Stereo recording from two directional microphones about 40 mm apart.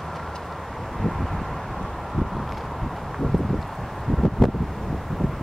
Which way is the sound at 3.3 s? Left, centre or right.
Centre.